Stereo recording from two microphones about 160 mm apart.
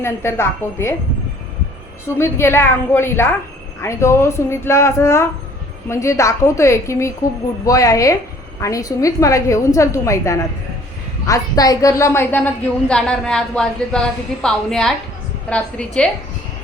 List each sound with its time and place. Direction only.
0.0 s a woman's voice: 15° left (ahead or behind)
2.1 s a woman's voice: 15° left (ahead or behind)